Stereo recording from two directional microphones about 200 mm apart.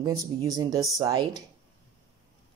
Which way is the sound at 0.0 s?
20° right (ahead or behind).